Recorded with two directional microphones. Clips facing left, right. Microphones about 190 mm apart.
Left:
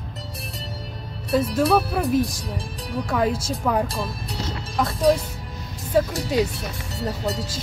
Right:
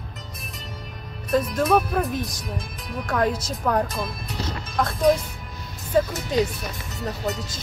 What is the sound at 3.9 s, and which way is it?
Speech, 35° left (ahead or behind).